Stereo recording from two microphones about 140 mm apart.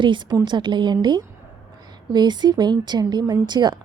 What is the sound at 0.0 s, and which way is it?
Speech, 35° right (ahead or behind).